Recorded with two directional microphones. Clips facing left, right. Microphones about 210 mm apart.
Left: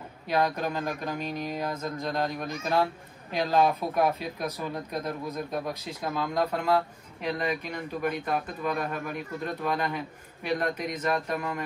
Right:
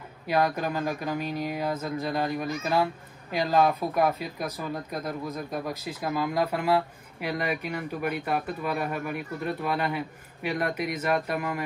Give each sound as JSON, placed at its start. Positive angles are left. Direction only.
{"t": 0.3, "sound": "speech", "side_deg": -5}